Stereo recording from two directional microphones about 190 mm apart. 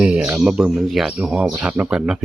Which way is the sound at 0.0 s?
5° right (ahead or behind).